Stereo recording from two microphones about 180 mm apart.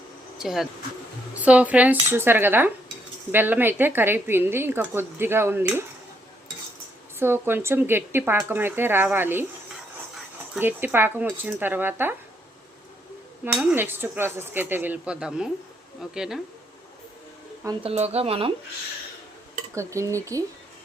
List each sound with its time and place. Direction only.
0.3 s a woman's voice: centre (ahead or behind)
7.2 s a woman's voice: 15° right (ahead or behind)
10.6 s a woman's voice: 10° right (ahead or behind)
13.4 s a woman's voice: 10° right (ahead or behind)
17.8 s speech: 35° right (ahead or behind)
19.7 s a woman's voice: 15° right (ahead or behind)